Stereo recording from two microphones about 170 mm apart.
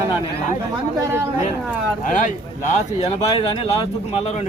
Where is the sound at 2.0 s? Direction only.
50° left (ahead or behind).